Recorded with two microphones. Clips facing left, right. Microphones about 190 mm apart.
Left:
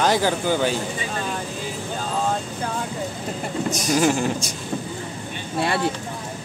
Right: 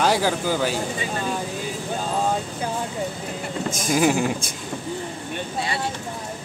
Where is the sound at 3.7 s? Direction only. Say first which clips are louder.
Left 1 dB; 50° right (ahead or behind).